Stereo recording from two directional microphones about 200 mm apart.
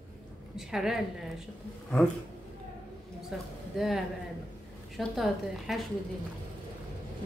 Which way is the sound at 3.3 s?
Centre (ahead or behind).